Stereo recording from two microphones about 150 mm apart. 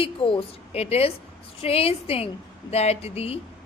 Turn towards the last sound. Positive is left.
turn(degrees=40)  # may be behind; listen again after turning